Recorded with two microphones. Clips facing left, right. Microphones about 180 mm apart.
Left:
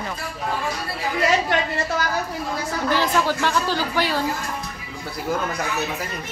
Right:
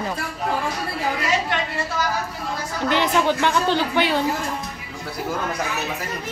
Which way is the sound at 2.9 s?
20° right (ahead or behind).